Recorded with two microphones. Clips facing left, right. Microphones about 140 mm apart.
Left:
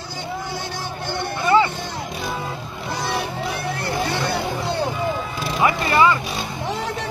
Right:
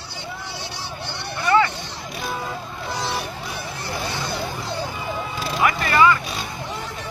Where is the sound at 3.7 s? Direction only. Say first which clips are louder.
Left 5 dB; 60° left (ahead or behind).